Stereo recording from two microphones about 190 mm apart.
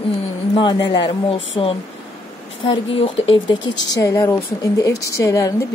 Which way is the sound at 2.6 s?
30° left (ahead or behind).